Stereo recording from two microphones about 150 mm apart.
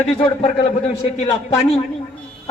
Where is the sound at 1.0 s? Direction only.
45° left (ahead or behind).